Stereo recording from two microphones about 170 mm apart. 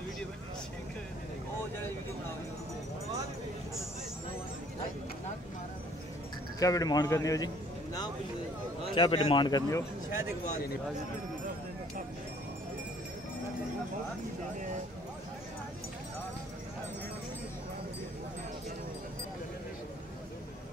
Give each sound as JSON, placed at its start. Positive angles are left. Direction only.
{"t": 6.6, "sound": "a man's voice", "side_deg": 20}